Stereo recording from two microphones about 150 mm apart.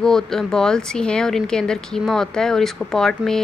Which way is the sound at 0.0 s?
5° left (ahead or behind).